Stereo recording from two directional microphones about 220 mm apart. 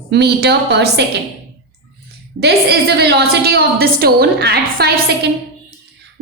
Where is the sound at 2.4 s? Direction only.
45° right (ahead or behind).